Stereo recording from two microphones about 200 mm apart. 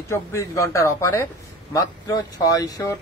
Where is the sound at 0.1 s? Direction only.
15° left (ahead or behind).